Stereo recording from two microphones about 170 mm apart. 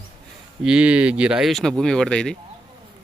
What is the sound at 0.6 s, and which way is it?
Speech, 5° right (ahead or behind).